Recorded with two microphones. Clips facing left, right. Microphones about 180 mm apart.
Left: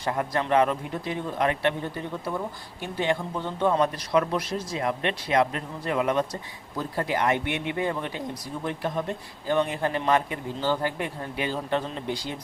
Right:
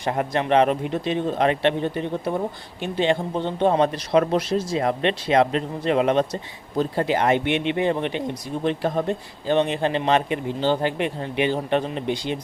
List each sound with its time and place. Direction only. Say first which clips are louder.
0.0 s speech: right 4 dB; 20° right (ahead or behind)